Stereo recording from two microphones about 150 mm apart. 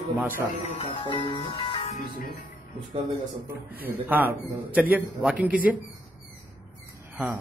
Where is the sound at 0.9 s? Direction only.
35° left (ahead or behind).